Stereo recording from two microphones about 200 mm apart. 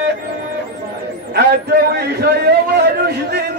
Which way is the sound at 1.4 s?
55° right (ahead or behind).